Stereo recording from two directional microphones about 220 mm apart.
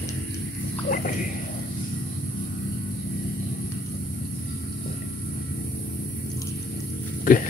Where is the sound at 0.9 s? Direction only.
35° left (ahead or behind).